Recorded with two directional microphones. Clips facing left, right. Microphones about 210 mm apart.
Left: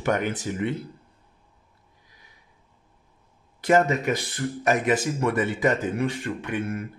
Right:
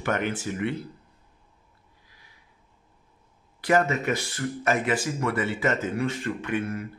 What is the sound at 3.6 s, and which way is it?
Speech, 20° left (ahead or behind).